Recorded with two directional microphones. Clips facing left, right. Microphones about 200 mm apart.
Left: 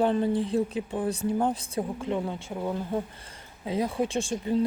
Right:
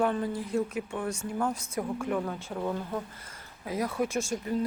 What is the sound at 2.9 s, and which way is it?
Speech, 30° left (ahead or behind).